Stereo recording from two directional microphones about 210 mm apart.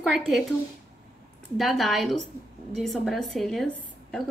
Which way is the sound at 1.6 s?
Centre (ahead or behind).